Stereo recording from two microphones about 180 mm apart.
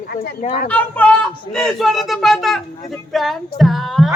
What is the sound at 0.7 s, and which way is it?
Speech, 10° left (ahead or behind).